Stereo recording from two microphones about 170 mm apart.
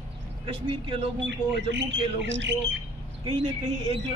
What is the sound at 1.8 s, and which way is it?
Speech, 90° right.